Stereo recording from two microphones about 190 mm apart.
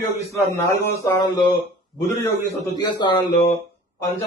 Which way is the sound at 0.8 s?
15° left (ahead or behind).